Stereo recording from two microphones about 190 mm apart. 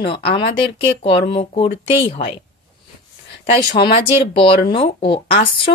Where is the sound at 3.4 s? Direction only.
55° left (ahead or behind).